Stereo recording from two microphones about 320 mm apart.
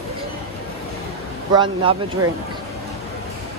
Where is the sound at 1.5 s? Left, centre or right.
Centre.